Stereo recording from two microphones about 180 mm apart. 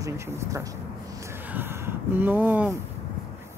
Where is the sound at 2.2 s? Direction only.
10° right (ahead or behind).